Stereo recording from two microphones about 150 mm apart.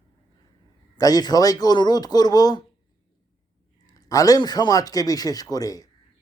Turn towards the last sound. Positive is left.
turn(degrees=25)  # may be behind; listen again after turning